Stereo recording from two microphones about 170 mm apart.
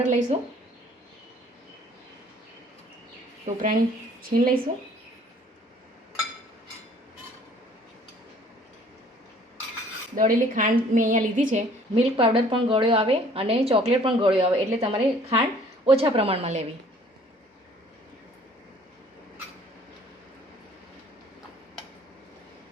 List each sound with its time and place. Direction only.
0.0 s a woman's voice: 45° right (ahead or behind)
3.4 s a woman's voice: 50° right (ahead or behind)
10.2 s a woman's voice: 50° right (ahead or behind)
12.1 s a woman's voice: 30° right (ahead or behind)